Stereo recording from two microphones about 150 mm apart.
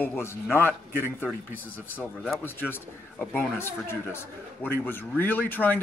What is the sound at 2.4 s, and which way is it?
A man's voice, 15° left (ahead or behind).